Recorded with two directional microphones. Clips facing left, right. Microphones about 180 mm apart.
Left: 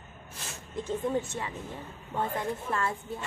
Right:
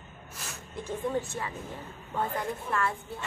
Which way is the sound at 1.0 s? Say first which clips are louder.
Right 2 dB; 20° left (ahead or behind).